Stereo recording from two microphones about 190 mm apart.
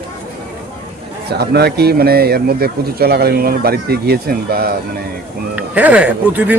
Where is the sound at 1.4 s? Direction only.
60° right (ahead or behind).